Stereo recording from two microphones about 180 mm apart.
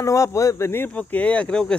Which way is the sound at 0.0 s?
15° left (ahead or behind).